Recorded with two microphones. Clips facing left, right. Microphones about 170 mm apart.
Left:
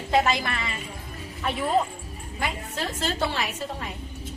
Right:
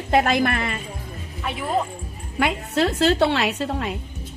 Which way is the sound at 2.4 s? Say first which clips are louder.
Right 10 dB; 70° right (ahead or behind).